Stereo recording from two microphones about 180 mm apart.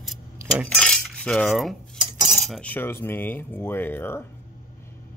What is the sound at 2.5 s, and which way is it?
Speech, 5° left (ahead or behind).